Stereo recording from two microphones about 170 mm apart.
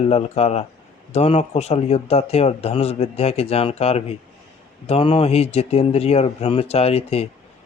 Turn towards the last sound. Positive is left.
turn(degrees=35)  # may be behind; listen again after turning